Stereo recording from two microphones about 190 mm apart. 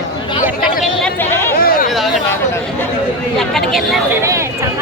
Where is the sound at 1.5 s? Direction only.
50° left (ahead or behind).